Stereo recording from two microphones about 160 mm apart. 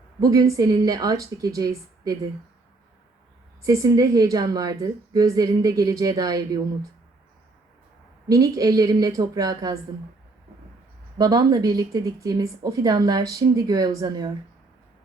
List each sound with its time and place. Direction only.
0.2 s a woman's voice: 20° right (ahead or behind)
3.6 s a woman's voice: 20° right (ahead or behind)
8.3 s a woman's voice: 20° right (ahead or behind)
11.2 s a woman's voice: 25° right (ahead or behind)